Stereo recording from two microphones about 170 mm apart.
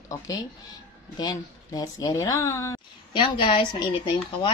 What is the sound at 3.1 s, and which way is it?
A woman's voice, 30° left (ahead or behind).